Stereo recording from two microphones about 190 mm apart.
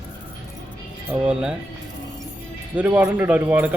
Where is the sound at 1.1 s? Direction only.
5° right (ahead or behind).